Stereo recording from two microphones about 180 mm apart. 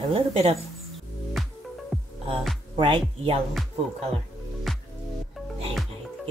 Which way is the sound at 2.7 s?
25° right (ahead or behind).